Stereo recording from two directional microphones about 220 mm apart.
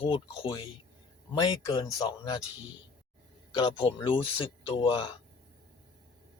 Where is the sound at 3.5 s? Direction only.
20° left (ahead or behind).